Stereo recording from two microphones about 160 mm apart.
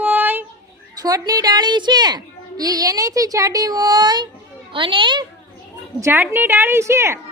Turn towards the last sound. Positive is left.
turn(degrees=-15)  # may be behind; listen again after turning